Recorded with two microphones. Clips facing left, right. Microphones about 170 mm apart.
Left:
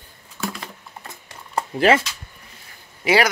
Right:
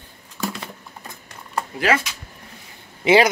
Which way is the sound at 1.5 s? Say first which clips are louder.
Left 4 dB; 25° left (ahead or behind).